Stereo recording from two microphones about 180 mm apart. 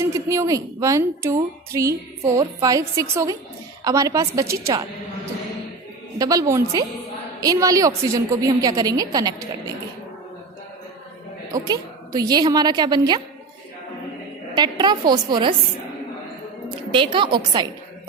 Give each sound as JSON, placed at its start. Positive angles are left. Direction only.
{"t": 0.0, "sound": "a woman's voice", "side_deg": -15}
{"t": 6.1, "sound": "a woman's voice", "side_deg": -20}
{"t": 11.5, "sound": "a woman's voice", "side_deg": -20}
{"t": 14.5, "sound": "a woman's voice", "side_deg": -25}
{"t": 16.9, "sound": "a woman's voice", "side_deg": -25}